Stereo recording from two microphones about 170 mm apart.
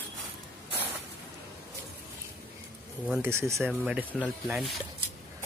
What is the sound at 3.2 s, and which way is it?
Speech, 15° right (ahead or behind).